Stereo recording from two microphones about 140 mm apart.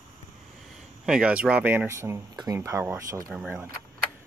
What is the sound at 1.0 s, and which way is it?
Speech, 5° right (ahead or behind).